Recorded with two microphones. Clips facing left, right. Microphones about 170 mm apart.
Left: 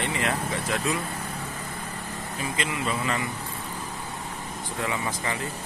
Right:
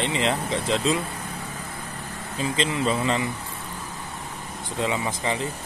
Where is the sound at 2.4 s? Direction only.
25° right (ahead or behind).